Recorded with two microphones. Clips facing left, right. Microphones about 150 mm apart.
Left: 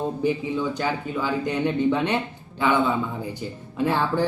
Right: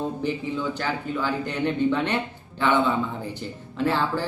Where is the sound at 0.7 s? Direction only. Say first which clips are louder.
Left 1 dB; 15° left (ahead or behind).